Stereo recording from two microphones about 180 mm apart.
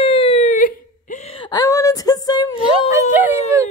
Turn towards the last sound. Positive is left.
turn(degrees=-10)  # may be behind; listen again after turning